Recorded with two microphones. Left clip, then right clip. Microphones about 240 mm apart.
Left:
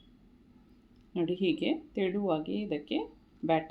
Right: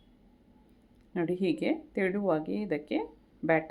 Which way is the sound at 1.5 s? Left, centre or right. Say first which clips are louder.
Even; right.